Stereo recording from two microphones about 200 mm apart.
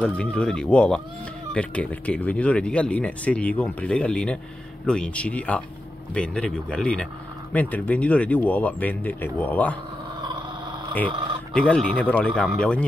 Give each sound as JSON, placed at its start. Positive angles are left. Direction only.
{"t": 0.0, "sound": "speech", "side_deg": 5}
{"t": 11.1, "sound": "speech", "side_deg": -25}
{"t": 11.5, "sound": "speech", "side_deg": 5}